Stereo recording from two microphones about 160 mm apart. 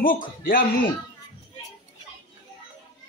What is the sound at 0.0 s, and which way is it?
Speech, 60° left (ahead or behind).